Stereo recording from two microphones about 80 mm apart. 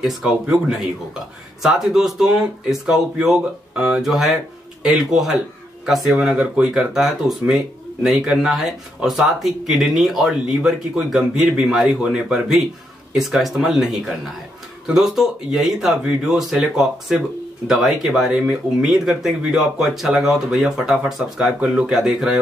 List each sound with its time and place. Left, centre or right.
0.7 s speech: centre